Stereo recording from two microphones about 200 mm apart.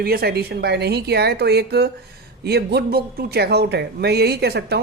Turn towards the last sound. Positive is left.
turn(degrees=-55)  # may be behind; listen again after turning